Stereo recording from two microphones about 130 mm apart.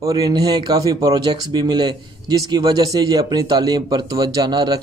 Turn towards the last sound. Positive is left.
turn(degrees=-35)  # may be behind; listen again after turning